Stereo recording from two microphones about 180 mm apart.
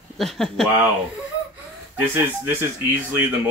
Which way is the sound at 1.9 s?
10° right (ahead or behind).